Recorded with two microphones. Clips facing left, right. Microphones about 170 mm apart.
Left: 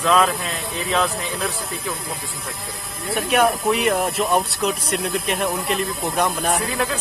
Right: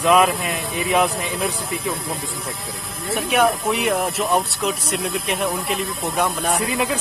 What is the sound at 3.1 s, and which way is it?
Speech, centre (ahead or behind).